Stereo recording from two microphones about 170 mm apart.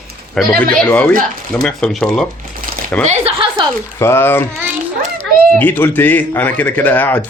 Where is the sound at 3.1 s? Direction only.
35° right (ahead or behind).